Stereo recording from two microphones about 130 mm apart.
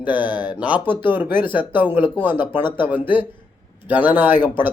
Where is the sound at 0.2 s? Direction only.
35° left (ahead or behind).